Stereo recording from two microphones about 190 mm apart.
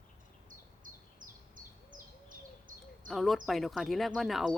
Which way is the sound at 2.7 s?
45° right (ahead or behind).